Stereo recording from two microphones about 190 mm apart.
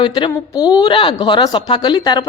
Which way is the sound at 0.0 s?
25° left (ahead or behind).